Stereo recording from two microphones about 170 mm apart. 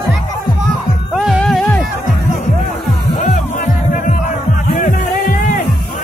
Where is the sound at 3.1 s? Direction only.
50° left (ahead or behind).